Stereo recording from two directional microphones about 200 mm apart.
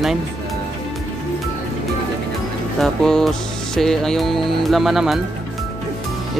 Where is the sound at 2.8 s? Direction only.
5° left (ahead or behind).